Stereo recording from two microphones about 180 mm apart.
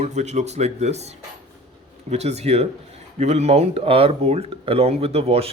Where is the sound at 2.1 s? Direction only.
35° right (ahead or behind).